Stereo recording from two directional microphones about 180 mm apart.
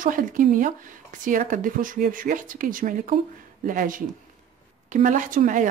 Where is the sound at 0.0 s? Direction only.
45° right (ahead or behind).